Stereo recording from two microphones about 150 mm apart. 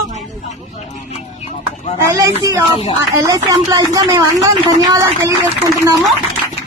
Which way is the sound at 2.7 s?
40° left (ahead or behind).